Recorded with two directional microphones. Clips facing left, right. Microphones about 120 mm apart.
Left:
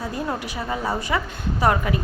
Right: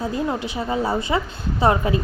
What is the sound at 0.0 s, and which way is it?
A woman's voice, 25° right (ahead or behind).